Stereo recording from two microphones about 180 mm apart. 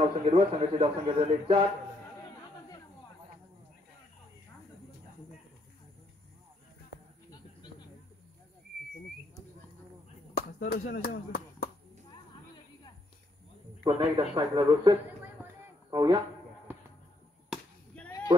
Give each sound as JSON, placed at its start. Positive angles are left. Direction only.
{"t": 0.0, "sound": "a man's voice", "side_deg": -35}
{"t": 7.2, "sound": "a sound", "side_deg": 20}
{"t": 10.3, "sound": "chop", "side_deg": 60}
{"t": 13.8, "sound": "a man's voice", "side_deg": -30}